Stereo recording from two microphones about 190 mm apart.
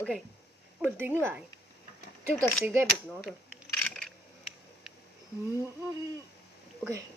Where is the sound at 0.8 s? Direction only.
10° right (ahead or behind).